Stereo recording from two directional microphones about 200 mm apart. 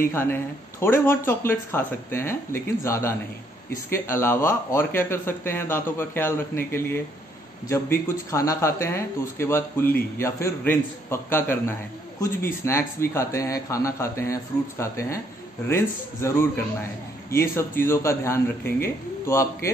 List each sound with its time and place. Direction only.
0.0 s speech: 10° left (ahead or behind)